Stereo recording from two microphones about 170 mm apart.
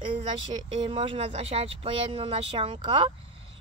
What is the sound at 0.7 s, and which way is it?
Speech, 30° right (ahead or behind).